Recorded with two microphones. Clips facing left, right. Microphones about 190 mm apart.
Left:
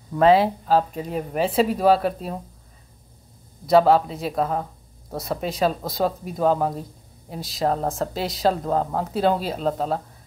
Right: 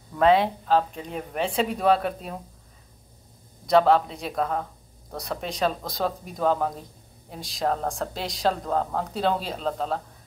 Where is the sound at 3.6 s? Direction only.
5° left (ahead or behind).